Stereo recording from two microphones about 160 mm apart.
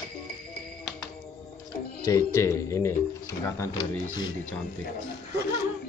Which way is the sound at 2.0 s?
20° left (ahead or behind).